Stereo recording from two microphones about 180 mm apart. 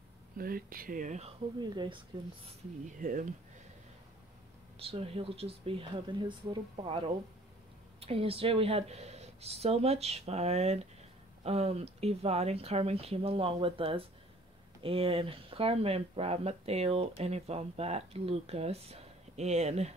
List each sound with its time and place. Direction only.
0.4 s speech: 55° right (ahead or behind)
2.1 s speech: 25° right (ahead or behind)
2.9 s speech: 50° right (ahead or behind)
4.7 s speech: 30° right (ahead or behind)